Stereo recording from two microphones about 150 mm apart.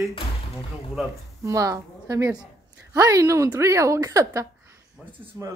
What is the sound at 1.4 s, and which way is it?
A woman's voice, 20° right (ahead or behind).